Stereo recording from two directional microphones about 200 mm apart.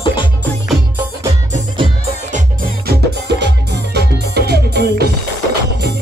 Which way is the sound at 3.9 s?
55° right (ahead or behind).